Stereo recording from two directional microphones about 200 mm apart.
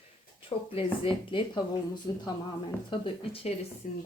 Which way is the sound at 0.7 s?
25° left (ahead or behind).